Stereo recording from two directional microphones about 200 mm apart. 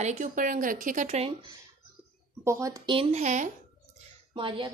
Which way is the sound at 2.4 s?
15° right (ahead or behind).